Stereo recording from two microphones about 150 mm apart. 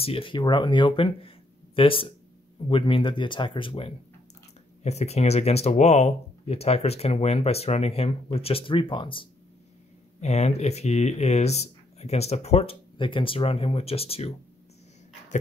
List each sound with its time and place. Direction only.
0.0 s speech: 35° left (ahead or behind)
10.2 s speech: 45° left (ahead or behind)